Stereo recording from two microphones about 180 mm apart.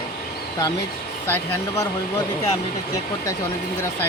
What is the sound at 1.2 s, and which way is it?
Speech, 15° left (ahead or behind).